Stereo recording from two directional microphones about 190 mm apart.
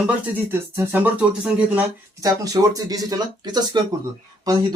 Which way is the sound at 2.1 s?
20° right (ahead or behind).